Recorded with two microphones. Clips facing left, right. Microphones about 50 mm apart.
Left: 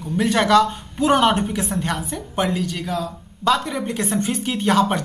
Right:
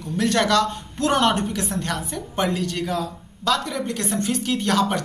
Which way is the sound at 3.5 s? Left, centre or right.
Centre.